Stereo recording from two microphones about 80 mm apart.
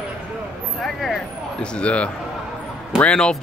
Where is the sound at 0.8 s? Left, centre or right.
Centre.